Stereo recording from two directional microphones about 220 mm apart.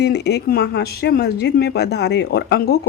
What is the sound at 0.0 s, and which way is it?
Speech, 50° left (ahead or behind).